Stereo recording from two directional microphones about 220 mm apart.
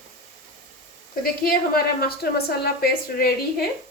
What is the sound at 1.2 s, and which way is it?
A woman's voice, 40° left (ahead or behind).